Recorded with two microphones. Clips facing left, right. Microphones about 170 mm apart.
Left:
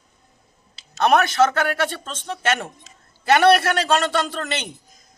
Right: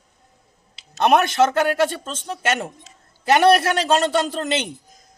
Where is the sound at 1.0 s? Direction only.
20° right (ahead or behind).